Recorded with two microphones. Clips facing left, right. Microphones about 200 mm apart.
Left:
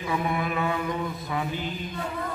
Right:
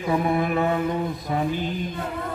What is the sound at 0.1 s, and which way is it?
Mantra, 40° right (ahead or behind).